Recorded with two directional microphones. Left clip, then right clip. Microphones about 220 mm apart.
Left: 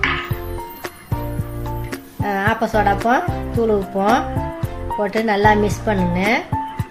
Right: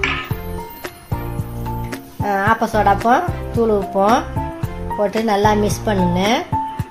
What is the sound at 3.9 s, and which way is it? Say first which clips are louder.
Speech: right 2 dB; 5° right (ahead or behind).